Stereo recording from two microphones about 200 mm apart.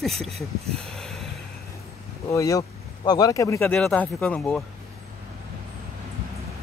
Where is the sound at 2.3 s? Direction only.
15° left (ahead or behind).